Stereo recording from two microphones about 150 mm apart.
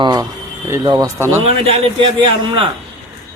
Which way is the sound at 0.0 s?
30° right (ahead or behind).